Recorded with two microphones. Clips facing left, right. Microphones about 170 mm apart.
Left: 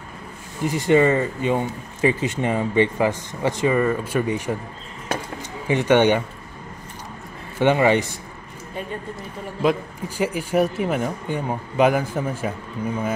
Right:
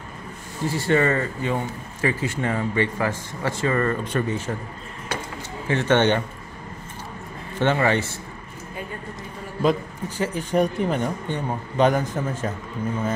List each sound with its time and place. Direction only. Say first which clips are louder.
0.7 s speech: left 4 dB; 15° left (ahead or behind)
5.7 s speech: left 3 dB; 15° left (ahead or behind)
7.5 s speech: left 4 dB; 15° left (ahead or behind)
9.6 s speech: even; 5° left (ahead or behind)